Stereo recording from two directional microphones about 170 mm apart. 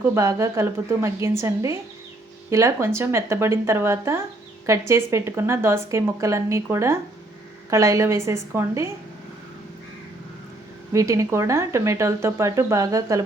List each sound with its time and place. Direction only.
0.1 s speech: 15° right (ahead or behind)
10.9 s speech: 20° right (ahead or behind)